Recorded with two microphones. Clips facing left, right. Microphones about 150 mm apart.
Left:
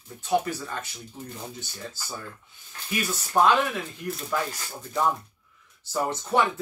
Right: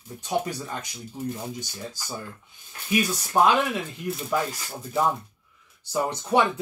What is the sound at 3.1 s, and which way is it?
Speech, 15° right (ahead or behind).